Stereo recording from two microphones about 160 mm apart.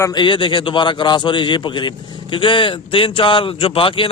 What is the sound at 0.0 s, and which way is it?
A man's voice, 25° left (ahead or behind).